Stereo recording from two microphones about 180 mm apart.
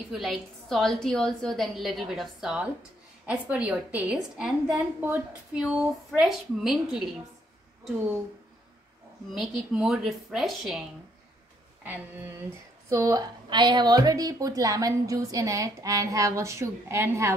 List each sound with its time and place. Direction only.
0.1 s a woman's voice: centre (ahead or behind)
9.3 s a woman's voice: centre (ahead or behind)
11.8 s a woman's voice: 10° right (ahead or behind)